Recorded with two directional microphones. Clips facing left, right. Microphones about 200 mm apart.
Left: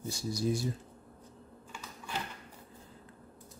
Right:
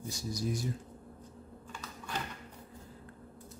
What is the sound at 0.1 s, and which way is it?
Speech, 30° left (ahead or behind).